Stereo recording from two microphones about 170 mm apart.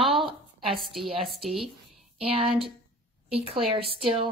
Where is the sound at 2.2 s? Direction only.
35° right (ahead or behind).